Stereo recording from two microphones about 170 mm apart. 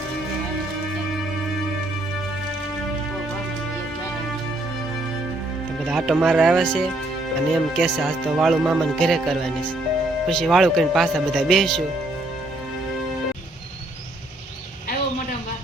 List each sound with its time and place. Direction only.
5.8 s speech: 5° right (ahead or behind)